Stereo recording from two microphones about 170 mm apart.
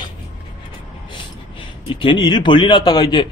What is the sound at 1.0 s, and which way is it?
A man's voice, 30° left (ahead or behind).